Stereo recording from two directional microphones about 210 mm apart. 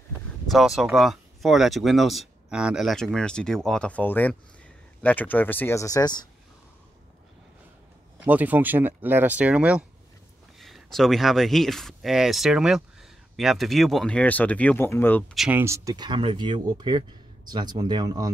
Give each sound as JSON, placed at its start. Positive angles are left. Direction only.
{"t": 0.5, "sound": "speech", "side_deg": 0}
{"t": 8.2, "sound": "speech", "side_deg": -10}
{"t": 15.6, "sound": "speech", "side_deg": -15}